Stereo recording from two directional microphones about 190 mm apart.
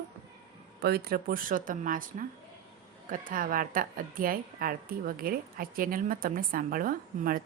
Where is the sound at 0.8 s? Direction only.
55° right (ahead or behind).